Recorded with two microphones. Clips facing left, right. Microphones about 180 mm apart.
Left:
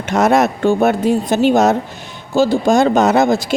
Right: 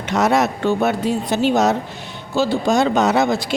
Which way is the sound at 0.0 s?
50° left (ahead or behind).